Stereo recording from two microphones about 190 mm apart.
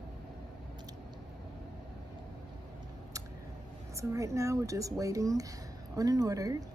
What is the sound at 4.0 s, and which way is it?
Speech, 15° right (ahead or behind).